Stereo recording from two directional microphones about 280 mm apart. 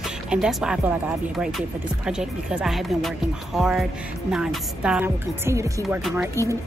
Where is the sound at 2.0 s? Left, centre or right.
Centre.